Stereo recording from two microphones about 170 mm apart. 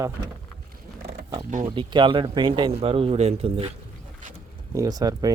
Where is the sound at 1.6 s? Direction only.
30° right (ahead or behind).